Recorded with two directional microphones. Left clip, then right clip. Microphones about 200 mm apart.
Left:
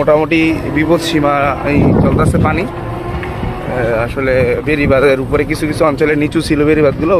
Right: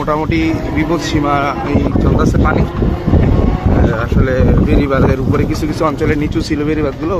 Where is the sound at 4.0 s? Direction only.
25° left (ahead or behind).